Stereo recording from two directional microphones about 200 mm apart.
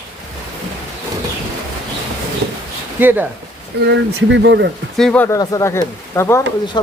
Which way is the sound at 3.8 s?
60° right (ahead or behind).